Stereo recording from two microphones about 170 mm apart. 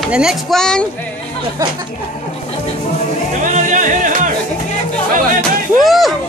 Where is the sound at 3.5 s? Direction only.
50° right (ahead or behind).